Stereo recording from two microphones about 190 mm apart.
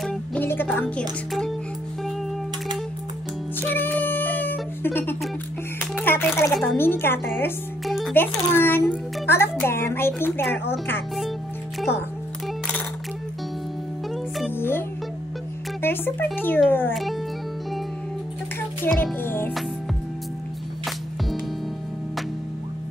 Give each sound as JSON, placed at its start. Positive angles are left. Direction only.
{"t": 0.0, "sound": "music", "side_deg": 5}
{"t": 3.6, "sound": "a sound", "side_deg": 10}
{"t": 5.9, "sound": "music", "side_deg": 10}
{"t": 6.5, "sound": "a woman's voice", "side_deg": 10}
{"t": 7.8, "sound": "music", "side_deg": 0}
{"t": 8.1, "sound": "speech", "side_deg": 10}
{"t": 14.6, "sound": "music", "side_deg": 10}
{"t": 16.3, "sound": "speech", "side_deg": 10}
{"t": 18.9, "sound": "music", "side_deg": 5}